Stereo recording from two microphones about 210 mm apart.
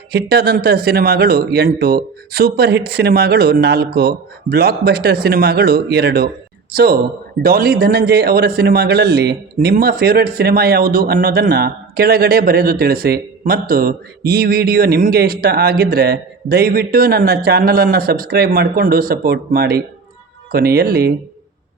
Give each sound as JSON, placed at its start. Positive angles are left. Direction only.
{"t": 0.1, "sound": "a man's voice", "side_deg": -50}